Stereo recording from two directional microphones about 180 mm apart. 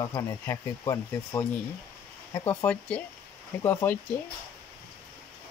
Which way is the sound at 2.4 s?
10° left (ahead or behind).